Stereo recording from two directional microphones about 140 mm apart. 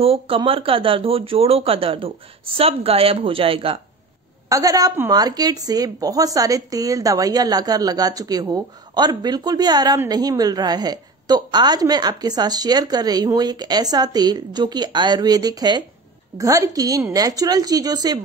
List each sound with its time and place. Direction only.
0.0 s speech: 40° right (ahead or behind)
4.5 s a woman's voice: 25° right (ahead or behind)